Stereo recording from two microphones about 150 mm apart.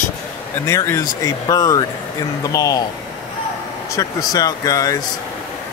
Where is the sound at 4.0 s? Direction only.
25° left (ahead or behind).